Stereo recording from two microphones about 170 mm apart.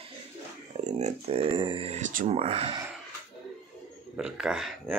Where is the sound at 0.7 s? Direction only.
40° right (ahead or behind).